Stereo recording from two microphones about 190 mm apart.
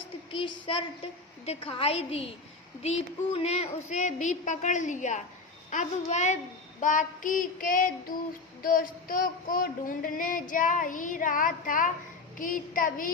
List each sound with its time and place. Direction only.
0.3 s a woman's voice: 25° left (ahead or behind)
1.5 s child singing: 30° left (ahead or behind)
5.7 s female singing: 40° left (ahead or behind)